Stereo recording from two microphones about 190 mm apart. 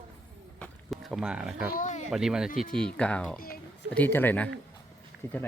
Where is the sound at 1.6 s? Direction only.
45° left (ahead or behind).